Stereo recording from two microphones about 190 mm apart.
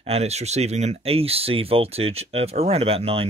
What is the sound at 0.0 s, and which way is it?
Speech, 35° right (ahead or behind).